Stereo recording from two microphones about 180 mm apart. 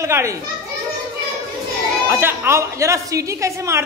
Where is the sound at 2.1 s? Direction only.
10° right (ahead or behind).